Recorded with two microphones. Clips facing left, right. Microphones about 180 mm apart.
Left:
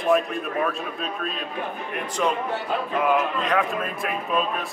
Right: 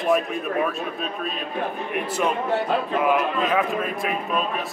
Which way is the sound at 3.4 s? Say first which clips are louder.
Right 2 dB; 5° right (ahead or behind).